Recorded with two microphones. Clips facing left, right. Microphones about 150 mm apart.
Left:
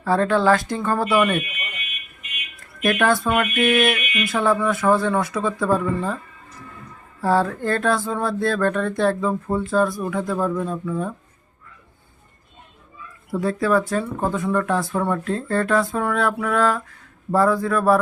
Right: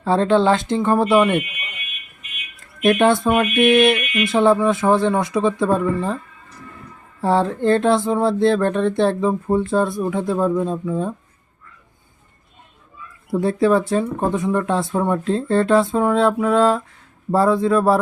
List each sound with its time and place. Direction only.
0.0 s speech: 25° right (ahead or behind)
2.8 s speech: 25° right (ahead or behind)
7.2 s speech: 25° right (ahead or behind)
13.3 s speech: 25° right (ahead or behind)